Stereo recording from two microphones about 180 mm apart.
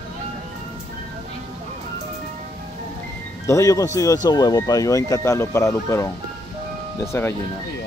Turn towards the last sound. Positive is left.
turn(degrees=15)  # may be behind; listen again after turning